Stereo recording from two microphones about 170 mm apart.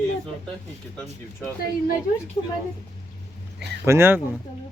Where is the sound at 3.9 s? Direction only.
15° right (ahead or behind).